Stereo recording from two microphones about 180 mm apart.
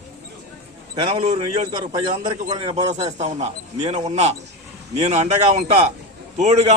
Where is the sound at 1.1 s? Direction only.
40° right (ahead or behind).